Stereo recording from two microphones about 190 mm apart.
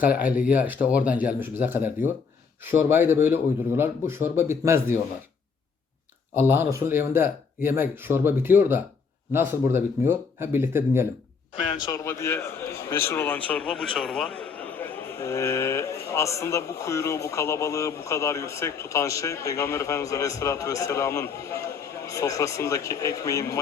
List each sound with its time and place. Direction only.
0.0 s speech: 10° right (ahead or behind)
6.3 s speech: 10° right (ahead or behind)
11.8 s a man's voice: 15° left (ahead or behind)